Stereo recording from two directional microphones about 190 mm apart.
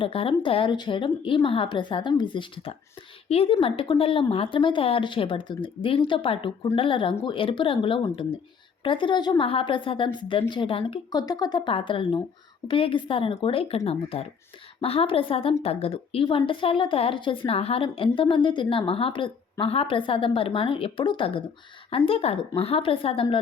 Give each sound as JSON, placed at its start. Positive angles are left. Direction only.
{"t": 0.0, "sound": "a woman's voice", "side_deg": 30}